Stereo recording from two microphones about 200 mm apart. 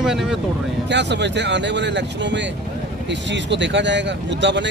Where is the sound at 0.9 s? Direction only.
60° right (ahead or behind).